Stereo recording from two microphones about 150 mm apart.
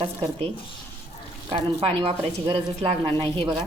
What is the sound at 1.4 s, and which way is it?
A woman's voice, 35° right (ahead or behind).